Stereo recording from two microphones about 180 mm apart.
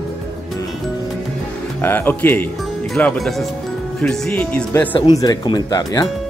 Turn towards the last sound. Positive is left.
turn(degrees=20)  # may be behind; listen again after turning